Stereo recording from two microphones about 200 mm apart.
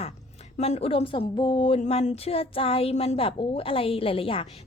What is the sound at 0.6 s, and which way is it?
Speech, 30° left (ahead or behind).